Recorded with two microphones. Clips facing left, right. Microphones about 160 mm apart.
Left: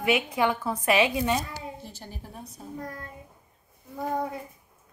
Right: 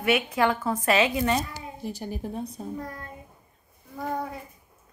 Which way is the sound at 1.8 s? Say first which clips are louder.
Right 10 dB; 15° right (ahead or behind).